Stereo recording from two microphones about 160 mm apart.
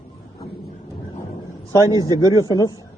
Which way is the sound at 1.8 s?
20° right (ahead or behind).